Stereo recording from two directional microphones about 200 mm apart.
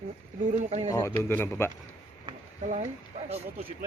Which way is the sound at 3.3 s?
30° right (ahead or behind).